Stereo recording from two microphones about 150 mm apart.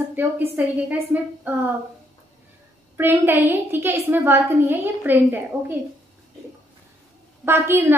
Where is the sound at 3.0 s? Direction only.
15° right (ahead or behind).